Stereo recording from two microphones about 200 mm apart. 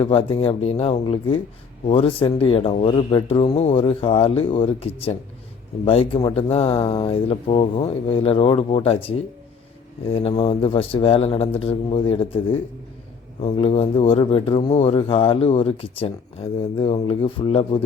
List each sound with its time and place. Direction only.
0.0 s speech: 30° left (ahead or behind)